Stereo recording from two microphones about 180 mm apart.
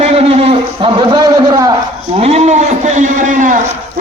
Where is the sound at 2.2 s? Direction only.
35° right (ahead or behind).